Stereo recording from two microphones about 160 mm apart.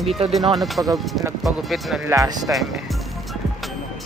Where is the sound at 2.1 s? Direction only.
20° right (ahead or behind).